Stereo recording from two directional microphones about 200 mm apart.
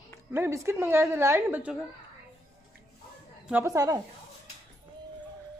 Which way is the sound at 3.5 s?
15° right (ahead or behind).